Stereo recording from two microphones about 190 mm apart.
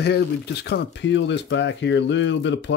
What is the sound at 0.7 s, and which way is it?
Speech, 65° left (ahead or behind).